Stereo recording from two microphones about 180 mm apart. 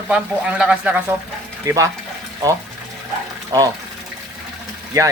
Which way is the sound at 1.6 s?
20° right (ahead or behind).